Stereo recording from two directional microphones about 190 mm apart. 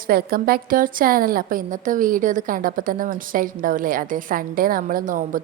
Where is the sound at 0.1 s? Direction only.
50° right (ahead or behind).